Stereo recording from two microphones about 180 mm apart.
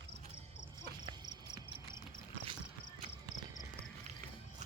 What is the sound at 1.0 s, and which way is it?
Cricket, 25° right (ahead or behind).